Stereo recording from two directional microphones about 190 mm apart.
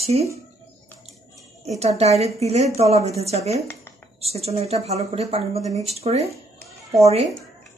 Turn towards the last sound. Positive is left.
turn(degrees=-35)  # may be behind; listen again after turning